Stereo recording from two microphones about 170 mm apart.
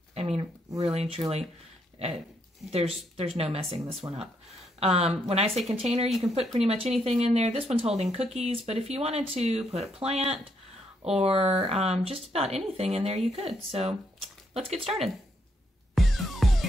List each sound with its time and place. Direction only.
0.1 s a sound: 35° right (ahead or behind)
0.8 s speech: 35° right (ahead or behind)
2.0 s dog: 35° right (ahead or behind)
2.7 s speech: 35° right (ahead or behind)
15.9 s music: centre (ahead or behind)